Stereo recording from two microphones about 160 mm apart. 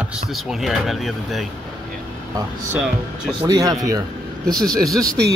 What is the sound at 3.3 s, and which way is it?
Speech, 20° right (ahead or behind).